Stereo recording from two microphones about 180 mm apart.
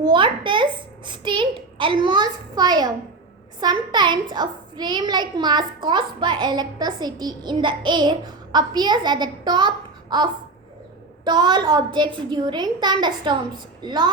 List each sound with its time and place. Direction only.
0.0 s a child's voice: 25° right (ahead or behind)
11.3 s a child's voice: 25° right (ahead or behind)